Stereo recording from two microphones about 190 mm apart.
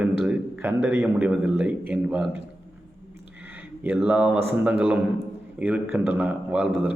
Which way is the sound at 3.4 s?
10° right (ahead or behind).